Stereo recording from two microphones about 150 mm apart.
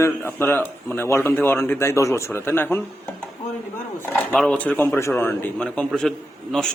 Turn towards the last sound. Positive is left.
turn(degrees=5)  # may be behind; listen again after turning